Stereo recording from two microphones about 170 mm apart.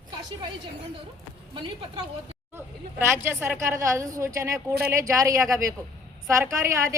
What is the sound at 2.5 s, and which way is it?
A woman's voice, 15° right (ahead or behind).